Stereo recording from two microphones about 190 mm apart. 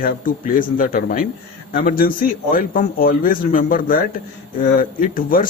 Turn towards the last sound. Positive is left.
turn(degrees=50)  # may be behind; listen again after turning